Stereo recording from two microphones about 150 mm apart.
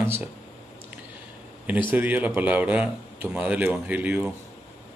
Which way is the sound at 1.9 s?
10° right (ahead or behind).